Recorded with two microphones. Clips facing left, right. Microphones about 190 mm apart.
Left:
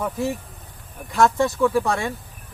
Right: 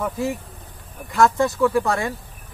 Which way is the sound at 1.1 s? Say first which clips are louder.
Right 1 dB; centre (ahead or behind).